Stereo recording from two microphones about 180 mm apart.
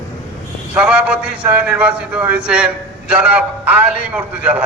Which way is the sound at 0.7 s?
10° right (ahead or behind).